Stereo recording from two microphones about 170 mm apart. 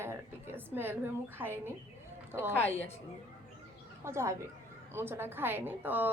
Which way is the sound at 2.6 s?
10° left (ahead or behind).